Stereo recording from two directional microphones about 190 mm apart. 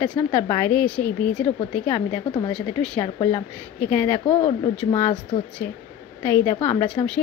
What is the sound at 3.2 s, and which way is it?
Speech, 30° left (ahead or behind).